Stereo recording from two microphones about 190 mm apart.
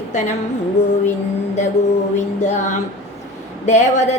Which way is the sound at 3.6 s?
35° left (ahead or behind).